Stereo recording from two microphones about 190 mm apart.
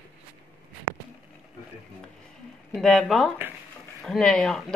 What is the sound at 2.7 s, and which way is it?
Speech, centre (ahead or behind).